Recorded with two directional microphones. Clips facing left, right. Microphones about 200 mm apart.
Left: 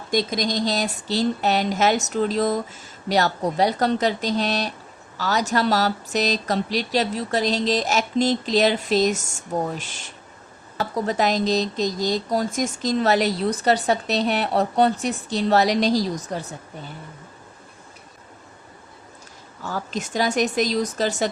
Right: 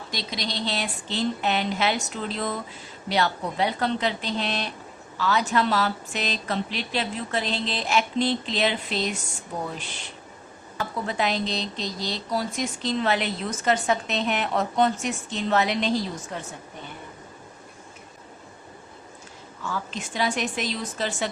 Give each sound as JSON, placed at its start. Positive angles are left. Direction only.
{"t": 0.1, "sound": "speech", "side_deg": 45}
{"t": 19.6, "sound": "speech", "side_deg": 40}